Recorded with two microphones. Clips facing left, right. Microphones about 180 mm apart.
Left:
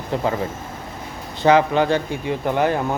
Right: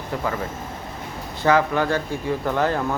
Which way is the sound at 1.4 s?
20° left (ahead or behind).